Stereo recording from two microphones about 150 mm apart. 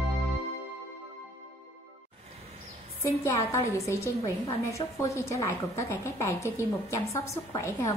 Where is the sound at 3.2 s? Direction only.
20° left (ahead or behind).